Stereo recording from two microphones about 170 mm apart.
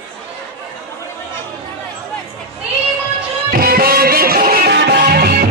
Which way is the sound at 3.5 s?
60° right (ahead or behind).